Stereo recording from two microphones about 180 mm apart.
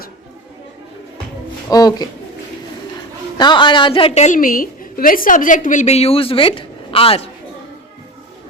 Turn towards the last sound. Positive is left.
turn(degrees=30)  # may be behind; listen again after turning